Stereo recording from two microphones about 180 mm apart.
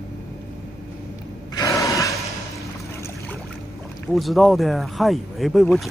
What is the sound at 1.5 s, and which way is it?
Gasp, 20° left (ahead or behind).